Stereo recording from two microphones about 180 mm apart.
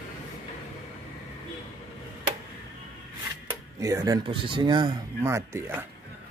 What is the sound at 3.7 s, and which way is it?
Speech, 15° right (ahead or behind).